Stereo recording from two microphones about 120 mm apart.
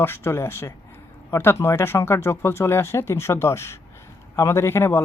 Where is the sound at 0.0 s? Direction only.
20° left (ahead or behind).